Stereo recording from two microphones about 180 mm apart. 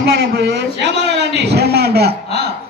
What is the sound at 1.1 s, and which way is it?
A man's voice, 70° right (ahead or behind).